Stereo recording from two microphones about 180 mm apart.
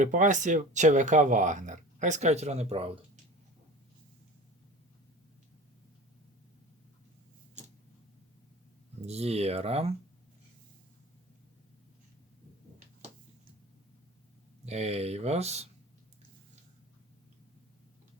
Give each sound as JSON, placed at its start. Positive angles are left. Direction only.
{"t": 0.0, "sound": "speech", "side_deg": -45}
{"t": 9.0, "sound": "speech", "side_deg": -35}
{"t": 14.6, "sound": "speech", "side_deg": -35}